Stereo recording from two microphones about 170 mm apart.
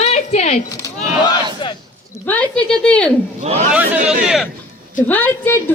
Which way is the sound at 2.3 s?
5° left (ahead or behind).